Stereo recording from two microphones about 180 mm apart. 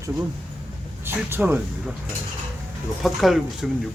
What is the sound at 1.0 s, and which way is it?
Speech, 10° right (ahead or behind).